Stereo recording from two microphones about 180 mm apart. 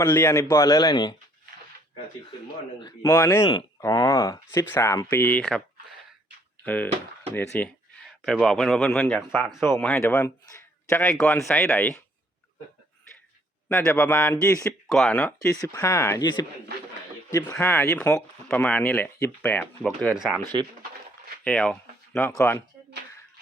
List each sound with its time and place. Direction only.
0.0 s speech: 15° left (ahead or behind)
2.8 s speech: 15° left (ahead or behind)
6.7 s speech: 10° left (ahead or behind)
11.1 s speech: centre (ahead or behind)
13.7 s speech: 15° left (ahead or behind)
14.8 s speech: centre (ahead or behind)
15.4 s speech: 20° left (ahead or behind)
17.3 s speech: 15° left (ahead or behind)
21.4 s speech: 5° left (ahead or behind)